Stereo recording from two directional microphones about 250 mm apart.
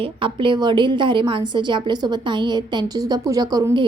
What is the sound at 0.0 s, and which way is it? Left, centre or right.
A woman's voice, centre.